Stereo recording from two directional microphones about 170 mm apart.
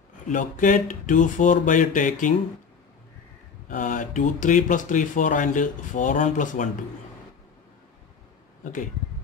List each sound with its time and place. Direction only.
0.3 s speech: 50° left (ahead or behind)
3.6 s speech: 50° left (ahead or behind)